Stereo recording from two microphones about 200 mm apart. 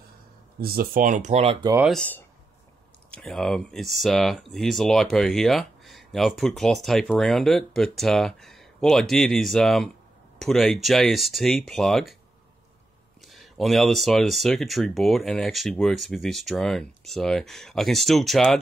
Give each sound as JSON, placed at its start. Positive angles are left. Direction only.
{"t": 0.6, "sound": "speech", "side_deg": -50}
{"t": 1.9, "sound": "speech", "side_deg": 5}
{"t": 13.3, "sound": "speech", "side_deg": 0}